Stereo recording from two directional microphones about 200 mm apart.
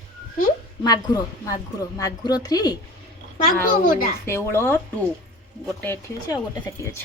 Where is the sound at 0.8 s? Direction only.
20° left (ahead or behind).